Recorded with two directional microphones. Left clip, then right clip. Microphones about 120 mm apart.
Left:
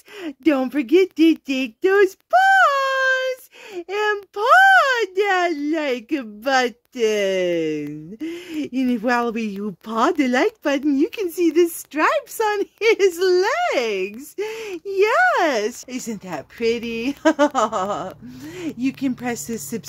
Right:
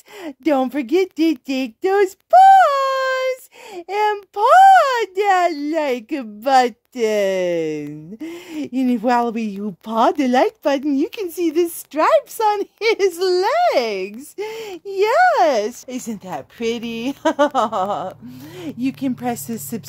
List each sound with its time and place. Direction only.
0.2 s speech: 35° right (ahead or behind)
16.1 s speech: 30° right (ahead or behind)